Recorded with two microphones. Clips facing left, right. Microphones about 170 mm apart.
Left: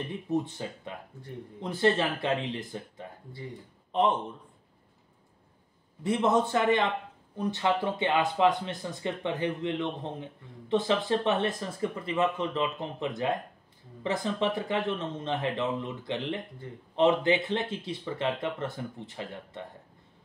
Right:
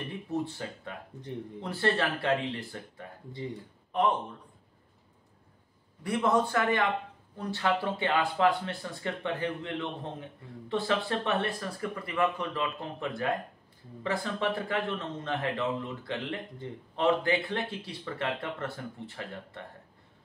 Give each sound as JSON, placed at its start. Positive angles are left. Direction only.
{"t": 0.3, "sound": "speech", "side_deg": 20}
{"t": 6.0, "sound": "speech", "side_deg": 20}